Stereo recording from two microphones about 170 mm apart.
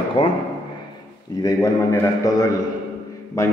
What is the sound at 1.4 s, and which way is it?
A man's voice, 20° left (ahead or behind).